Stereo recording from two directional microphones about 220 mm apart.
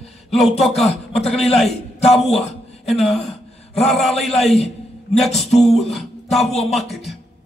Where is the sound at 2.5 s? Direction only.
30° left (ahead or behind).